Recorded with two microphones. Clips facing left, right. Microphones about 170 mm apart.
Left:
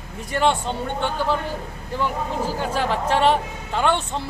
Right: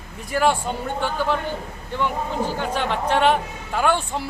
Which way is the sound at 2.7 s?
Centre (ahead or behind).